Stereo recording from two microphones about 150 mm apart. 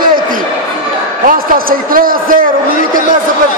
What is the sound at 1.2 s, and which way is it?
A man's voice, 70° right (ahead or behind).